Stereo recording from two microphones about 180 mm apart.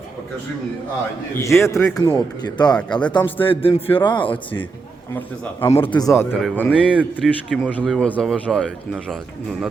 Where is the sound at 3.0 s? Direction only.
5° left (ahead or behind).